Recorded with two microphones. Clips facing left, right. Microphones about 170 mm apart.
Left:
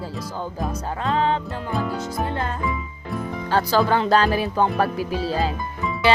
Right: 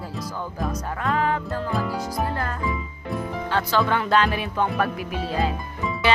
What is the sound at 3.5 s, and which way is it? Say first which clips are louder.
Music: left 4 dB; 35° left (ahead or behind).